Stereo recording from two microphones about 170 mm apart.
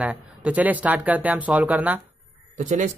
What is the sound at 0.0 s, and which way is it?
Speech, 10° right (ahead or behind).